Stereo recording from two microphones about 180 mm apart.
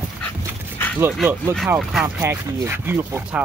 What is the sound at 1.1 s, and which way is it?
Speech, 5° left (ahead or behind).